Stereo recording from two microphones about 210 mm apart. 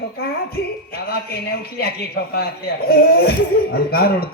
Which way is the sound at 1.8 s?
50° left (ahead or behind).